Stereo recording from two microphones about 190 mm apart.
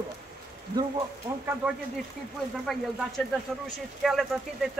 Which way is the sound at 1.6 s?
5° right (ahead or behind).